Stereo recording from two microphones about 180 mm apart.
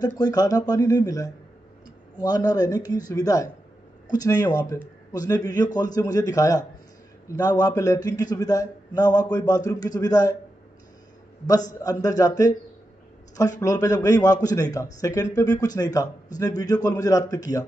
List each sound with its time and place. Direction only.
0.2 s a man's voice: 20° left (ahead or behind)
11.8 s a man's voice: 20° left (ahead or behind)